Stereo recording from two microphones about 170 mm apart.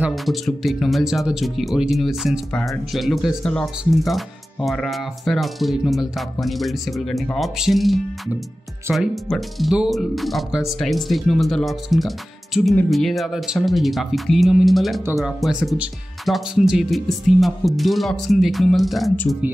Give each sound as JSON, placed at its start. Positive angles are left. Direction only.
{"t": 0.0, "sound": "speech", "side_deg": 0}